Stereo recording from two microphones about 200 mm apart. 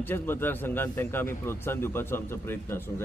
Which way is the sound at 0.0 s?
10° left (ahead or behind).